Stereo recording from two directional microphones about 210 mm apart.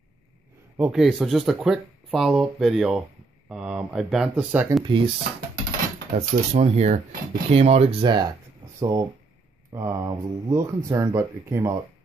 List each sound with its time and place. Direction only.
0.7 s speech: 5° right (ahead or behind)
4.8 s speech: 25° right (ahead or behind)
6.1 s speech: 30° right (ahead or behind); by 11.8 s 15° right (ahead or behind)